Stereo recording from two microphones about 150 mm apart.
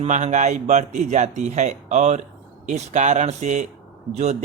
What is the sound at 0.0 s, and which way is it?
Speech, 50° right (ahead or behind).